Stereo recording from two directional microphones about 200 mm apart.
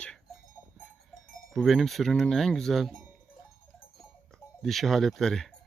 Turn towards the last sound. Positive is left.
turn(degrees=0)  # may be behind; listen again after turning